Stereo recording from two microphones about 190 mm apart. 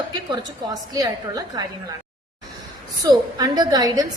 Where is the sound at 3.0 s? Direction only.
20° right (ahead or behind).